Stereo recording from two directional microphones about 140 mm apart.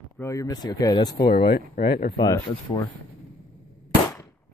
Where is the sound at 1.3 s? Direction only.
90° left.